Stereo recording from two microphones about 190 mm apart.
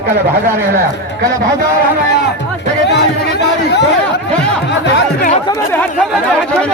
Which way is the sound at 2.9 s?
60° left (ahead or behind).